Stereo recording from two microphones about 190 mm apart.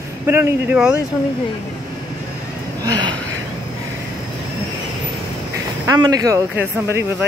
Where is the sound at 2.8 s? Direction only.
20° right (ahead or behind).